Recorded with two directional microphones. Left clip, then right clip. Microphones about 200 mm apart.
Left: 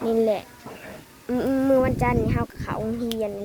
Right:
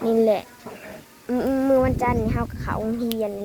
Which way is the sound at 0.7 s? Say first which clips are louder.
Right 2 dB; 35° right (ahead or behind).